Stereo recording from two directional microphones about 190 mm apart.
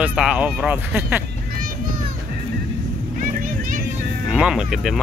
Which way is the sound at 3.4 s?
45° right (ahead or behind).